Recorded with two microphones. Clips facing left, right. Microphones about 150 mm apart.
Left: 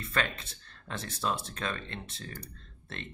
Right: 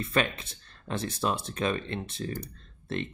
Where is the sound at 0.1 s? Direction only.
15° right (ahead or behind).